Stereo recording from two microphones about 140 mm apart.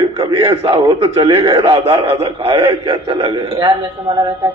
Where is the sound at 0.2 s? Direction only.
35° right (ahead or behind).